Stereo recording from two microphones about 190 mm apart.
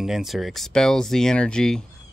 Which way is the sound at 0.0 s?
Centre (ahead or behind).